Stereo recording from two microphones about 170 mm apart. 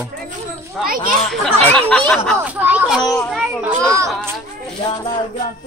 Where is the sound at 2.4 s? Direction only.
10° right (ahead or behind).